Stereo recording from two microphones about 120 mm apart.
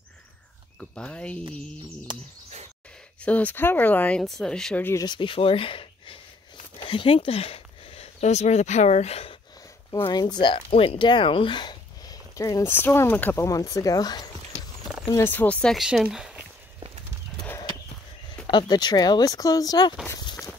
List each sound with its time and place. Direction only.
0.7 s speech: 5° left (ahead or behind)
2.1 s speech: 40° right (ahead or behind)
3.2 s speech: 10° left (ahead or behind)
5.0 s speech: 40° left (ahead or behind); by 9.4 s 55° left (ahead or behind)
10.0 s speech: 40° left (ahead or behind); by 13.5 s 15° left (ahead or behind)
13.5 s speech: 30° left (ahead or behind)
15.2 s speech: 15° left (ahead or behind)
15.8 s speech: 5° right (ahead or behind)
18.5 s speech: 40° left (ahead or behind)
20.2 s a sound: 30° left (ahead or behind)